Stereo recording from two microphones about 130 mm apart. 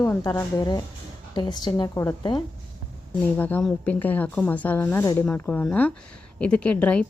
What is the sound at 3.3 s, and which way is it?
A woman's voice, 15° left (ahead or behind).